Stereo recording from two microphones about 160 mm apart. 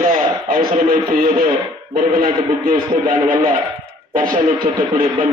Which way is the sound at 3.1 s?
60° right (ahead or behind).